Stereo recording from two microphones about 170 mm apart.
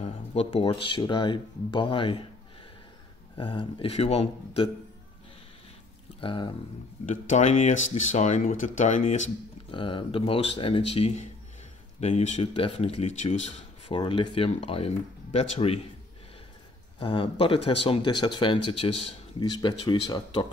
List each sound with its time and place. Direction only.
0.0 s speech: 35° left (ahead or behind)
3.3 s speech: 30° left (ahead or behind)
6.2 s speech: 30° left (ahead or behind)
7.1 s speech: 45° left (ahead or behind)
9.7 s speech: 30° left (ahead or behind)
17.0 s speech: 30° left (ahead or behind)